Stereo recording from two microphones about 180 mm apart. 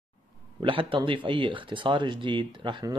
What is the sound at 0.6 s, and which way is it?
A man's voice, 30° right (ahead or behind).